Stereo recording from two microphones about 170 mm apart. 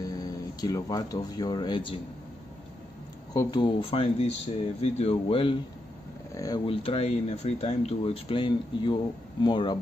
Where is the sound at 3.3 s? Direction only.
25° left (ahead or behind).